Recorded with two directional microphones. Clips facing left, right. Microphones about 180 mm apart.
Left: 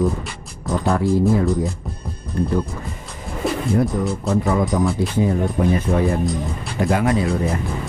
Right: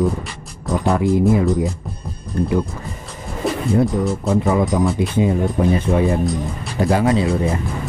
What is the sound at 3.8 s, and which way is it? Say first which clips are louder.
Speech: right 2 dB; 20° right (ahead or behind).